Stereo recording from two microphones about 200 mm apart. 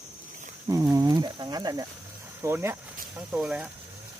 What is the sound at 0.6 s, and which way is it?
Speech, 15° right (ahead or behind).